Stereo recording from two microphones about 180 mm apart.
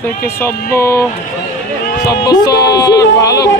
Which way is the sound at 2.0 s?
20° left (ahead or behind).